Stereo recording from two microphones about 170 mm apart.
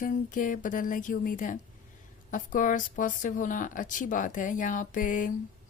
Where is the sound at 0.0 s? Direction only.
50° left (ahead or behind).